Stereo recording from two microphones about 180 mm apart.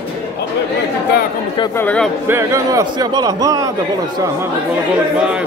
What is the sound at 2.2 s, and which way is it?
A man's voice, 15° right (ahead or behind).